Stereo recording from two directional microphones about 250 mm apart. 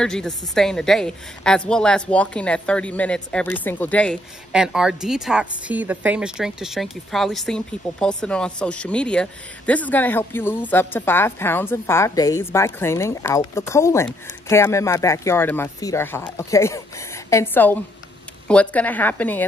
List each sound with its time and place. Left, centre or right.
0.0 s speech: centre